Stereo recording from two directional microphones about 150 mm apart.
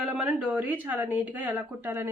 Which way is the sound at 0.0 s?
5° right (ahead or behind).